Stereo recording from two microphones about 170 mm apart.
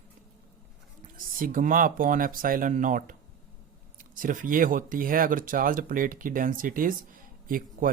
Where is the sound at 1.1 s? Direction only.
55° right (ahead or behind).